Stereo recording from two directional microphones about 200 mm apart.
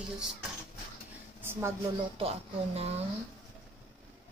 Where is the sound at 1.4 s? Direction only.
15° right (ahead or behind).